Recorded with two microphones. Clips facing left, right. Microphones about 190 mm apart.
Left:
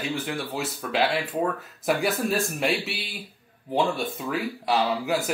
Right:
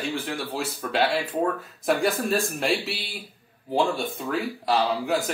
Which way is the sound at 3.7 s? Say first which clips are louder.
Right 1 dB; 5° left (ahead or behind).